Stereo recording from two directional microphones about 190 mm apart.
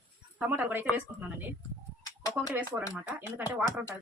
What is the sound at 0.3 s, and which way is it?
Speech, 10° right (ahead or behind).